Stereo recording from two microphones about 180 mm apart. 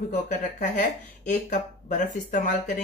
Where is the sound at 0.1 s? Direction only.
45° left (ahead or behind).